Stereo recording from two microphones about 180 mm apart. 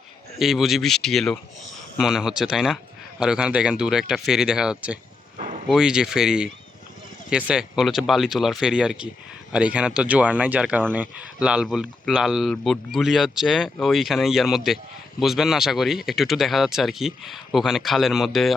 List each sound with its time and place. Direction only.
0.3 s speech: centre (ahead or behind)
5.4 s a sound: 40° right (ahead or behind)
5.6 s speech: 5° right (ahead or behind)